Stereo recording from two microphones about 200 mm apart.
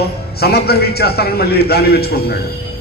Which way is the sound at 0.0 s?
50° left (ahead or behind).